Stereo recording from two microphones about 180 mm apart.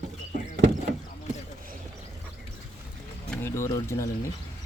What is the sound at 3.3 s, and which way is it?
Music, 10° left (ahead or behind).